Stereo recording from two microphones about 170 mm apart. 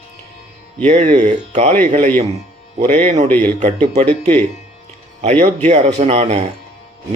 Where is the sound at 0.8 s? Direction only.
40° right (ahead or behind).